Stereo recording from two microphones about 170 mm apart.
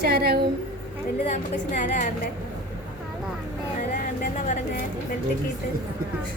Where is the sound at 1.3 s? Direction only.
45° left (ahead or behind).